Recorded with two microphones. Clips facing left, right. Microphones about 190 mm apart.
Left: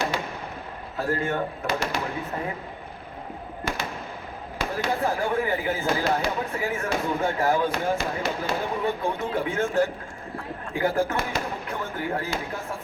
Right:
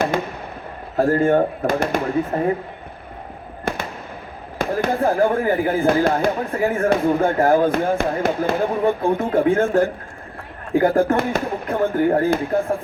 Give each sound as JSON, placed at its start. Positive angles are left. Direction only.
{"t": 0.1, "sound": "fireworks", "side_deg": -50}
{"t": 0.9, "sound": "speech", "side_deg": -50}
{"t": 3.7, "sound": "fireworks", "side_deg": -60}
{"t": 4.5, "sound": "speech", "side_deg": -55}